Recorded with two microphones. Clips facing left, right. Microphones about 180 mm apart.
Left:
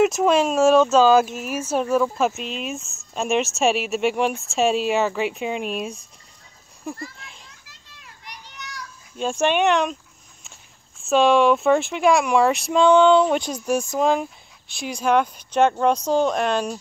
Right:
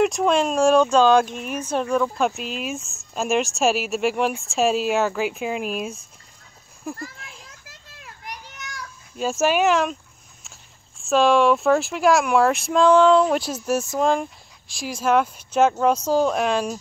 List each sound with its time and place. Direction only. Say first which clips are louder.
0.0 s speech: left 2 dB; centre (ahead or behind)
6.8 s a sound: even; centre (ahead or behind)
8.0 s children playing: right 5 dB; 50° right (ahead or behind)
9.1 s speech: even; 5° right (ahead or behind)
11.0 s speech: left 1 dB; centre (ahead or behind)